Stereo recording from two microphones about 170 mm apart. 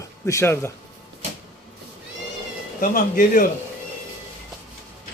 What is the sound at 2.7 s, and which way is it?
Speech, 55° left (ahead or behind).